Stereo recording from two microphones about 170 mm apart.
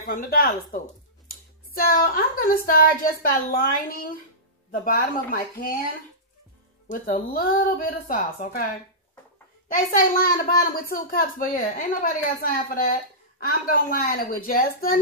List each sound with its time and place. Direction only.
0.0 s speech: 60° left (ahead or behind)
6.9 s speech: 55° left (ahead or behind)
9.9 s speech: 60° left (ahead or behind)